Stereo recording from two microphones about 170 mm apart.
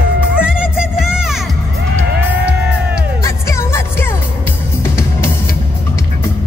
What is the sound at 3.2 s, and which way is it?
Music, 15° left (ahead or behind).